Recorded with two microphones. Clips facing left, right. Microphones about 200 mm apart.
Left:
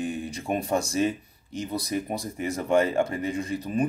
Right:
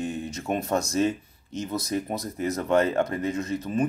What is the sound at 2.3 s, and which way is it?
Speech, 10° left (ahead or behind).